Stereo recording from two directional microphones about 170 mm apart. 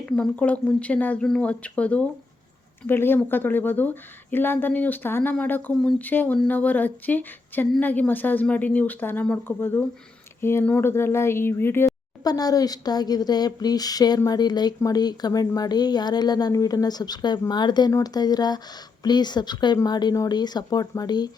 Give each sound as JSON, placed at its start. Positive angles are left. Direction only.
{"t": 0.0, "sound": "speech", "side_deg": 5}